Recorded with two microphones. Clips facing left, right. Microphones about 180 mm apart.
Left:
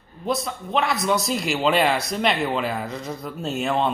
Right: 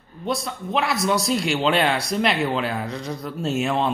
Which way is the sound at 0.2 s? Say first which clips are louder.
Left 1 dB; centre (ahead or behind).